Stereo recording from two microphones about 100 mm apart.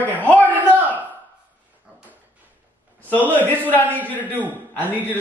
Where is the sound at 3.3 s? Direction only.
15° left (ahead or behind).